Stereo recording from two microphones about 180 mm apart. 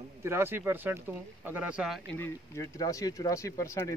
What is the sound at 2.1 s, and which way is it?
Speech, 15° left (ahead or behind).